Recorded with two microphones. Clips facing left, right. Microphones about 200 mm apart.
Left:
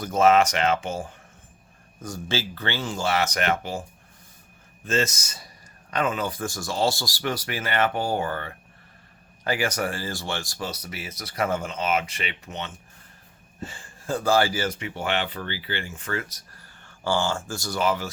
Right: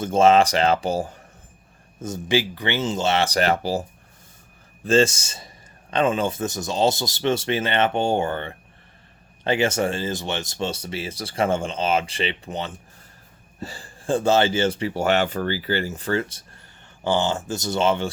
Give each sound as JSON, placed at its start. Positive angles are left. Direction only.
{"t": 0.0, "sound": "speech", "side_deg": -30}
{"t": 2.0, "sound": "speech", "side_deg": -20}
{"t": 4.9, "sound": "speech", "side_deg": -30}
{"t": 17.0, "sound": "speech", "side_deg": -20}